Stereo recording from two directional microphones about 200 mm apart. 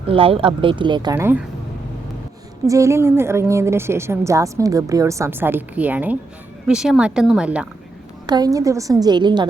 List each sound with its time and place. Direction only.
0.1 s speech: 30° right (ahead or behind); by 1.5 s 10° right (ahead or behind)
2.6 s a woman's voice: 15° right (ahead or behind)
8.3 s speech: 20° right (ahead or behind)